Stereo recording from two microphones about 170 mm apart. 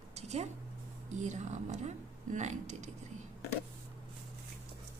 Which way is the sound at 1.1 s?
45° right (ahead or behind).